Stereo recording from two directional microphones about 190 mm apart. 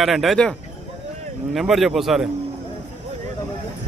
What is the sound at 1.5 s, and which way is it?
Speech, centre (ahead or behind).